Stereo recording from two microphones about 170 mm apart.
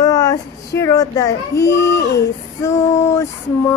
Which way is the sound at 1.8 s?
90° left.